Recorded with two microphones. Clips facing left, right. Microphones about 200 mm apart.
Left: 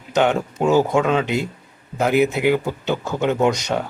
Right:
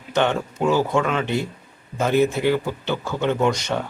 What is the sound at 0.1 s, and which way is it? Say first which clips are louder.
A man's voice: left 3 dB; 15° left (ahead or behind).